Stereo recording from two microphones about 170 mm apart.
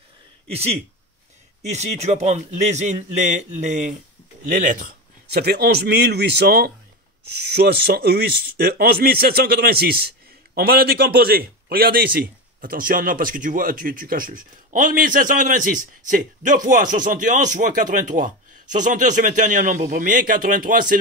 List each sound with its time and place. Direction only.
0.5 s a man's voice: 35° right (ahead or behind); by 21.0 s 55° right (ahead or behind)